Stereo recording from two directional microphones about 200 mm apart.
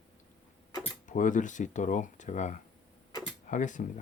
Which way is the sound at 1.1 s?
40° left (ahead or behind).